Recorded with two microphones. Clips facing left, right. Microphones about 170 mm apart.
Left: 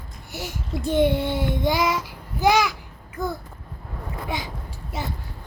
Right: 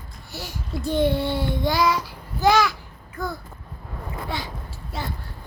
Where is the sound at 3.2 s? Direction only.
20° left (ahead or behind).